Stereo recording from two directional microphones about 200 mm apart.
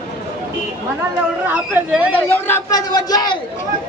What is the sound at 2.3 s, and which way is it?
Speech, 10° left (ahead or behind).